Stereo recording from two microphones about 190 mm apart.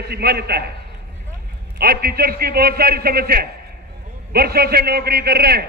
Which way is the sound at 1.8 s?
50° right (ahead or behind).